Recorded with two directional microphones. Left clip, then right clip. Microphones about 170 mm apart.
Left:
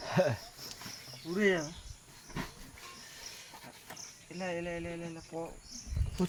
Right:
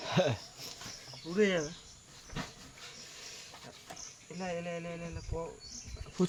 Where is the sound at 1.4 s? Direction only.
20° right (ahead or behind).